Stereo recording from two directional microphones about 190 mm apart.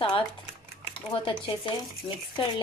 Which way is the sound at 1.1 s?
25° left (ahead or behind).